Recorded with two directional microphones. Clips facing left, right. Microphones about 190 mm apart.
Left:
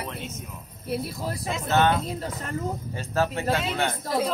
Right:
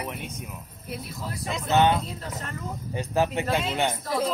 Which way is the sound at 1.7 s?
15° right (ahead or behind).